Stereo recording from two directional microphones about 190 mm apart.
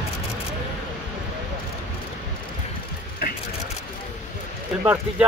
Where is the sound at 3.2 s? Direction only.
55° left (ahead or behind).